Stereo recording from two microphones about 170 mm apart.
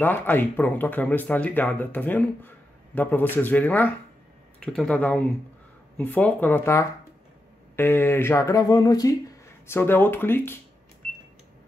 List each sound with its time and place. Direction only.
0.0 s speech: 10° left (ahead or behind)